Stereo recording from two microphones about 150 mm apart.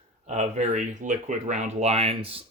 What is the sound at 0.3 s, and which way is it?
Speech, 55° right (ahead or behind).